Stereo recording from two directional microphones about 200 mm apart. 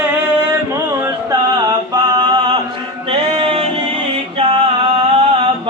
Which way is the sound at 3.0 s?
25° right (ahead or behind).